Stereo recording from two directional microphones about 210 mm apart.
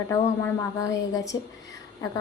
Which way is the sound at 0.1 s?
15° left (ahead or behind).